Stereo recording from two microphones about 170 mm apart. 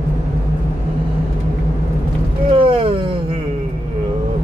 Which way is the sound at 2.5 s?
30° right (ahead or behind).